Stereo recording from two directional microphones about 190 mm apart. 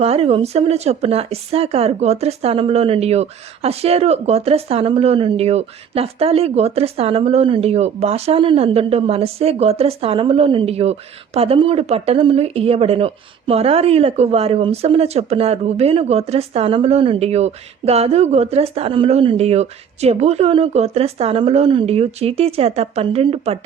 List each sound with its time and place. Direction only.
0.0 s speech: 30° right (ahead or behind)